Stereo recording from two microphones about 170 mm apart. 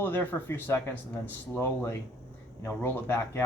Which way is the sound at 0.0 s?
10° left (ahead or behind).